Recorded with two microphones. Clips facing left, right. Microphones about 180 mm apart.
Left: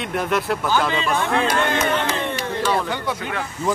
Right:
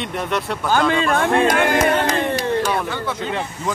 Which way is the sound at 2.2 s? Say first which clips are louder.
Right 5 dB; 40° right (ahead or behind).